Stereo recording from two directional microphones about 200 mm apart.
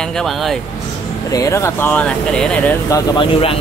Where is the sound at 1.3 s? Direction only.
15° left (ahead or behind).